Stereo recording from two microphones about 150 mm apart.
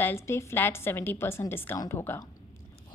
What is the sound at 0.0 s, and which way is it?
A woman's voice, 15° left (ahead or behind).